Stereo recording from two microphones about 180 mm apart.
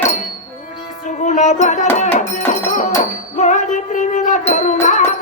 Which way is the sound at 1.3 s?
40° left (ahead or behind).